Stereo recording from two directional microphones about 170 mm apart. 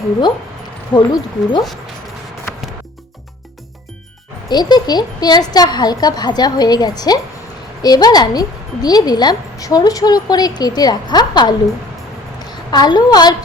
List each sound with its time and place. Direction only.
0.9 s a woman's voice: 25° left (ahead or behind)
4.4 s a woman's voice: 25° left (ahead or behind)